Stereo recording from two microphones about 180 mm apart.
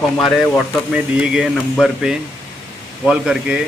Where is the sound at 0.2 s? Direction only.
Centre (ahead or behind).